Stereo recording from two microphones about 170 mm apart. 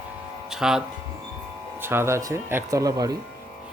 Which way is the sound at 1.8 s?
15° right (ahead or behind).